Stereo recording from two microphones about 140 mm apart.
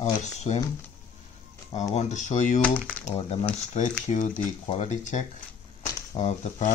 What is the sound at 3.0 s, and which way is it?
Speech, 45° left (ahead or behind).